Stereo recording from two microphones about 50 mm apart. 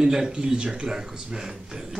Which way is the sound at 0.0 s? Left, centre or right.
Centre.